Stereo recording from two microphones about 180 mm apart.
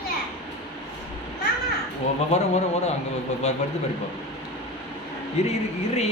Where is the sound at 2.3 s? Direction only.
35° left (ahead or behind).